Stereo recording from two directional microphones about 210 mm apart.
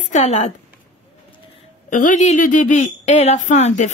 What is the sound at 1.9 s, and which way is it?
A woman's voice, 35° left (ahead or behind).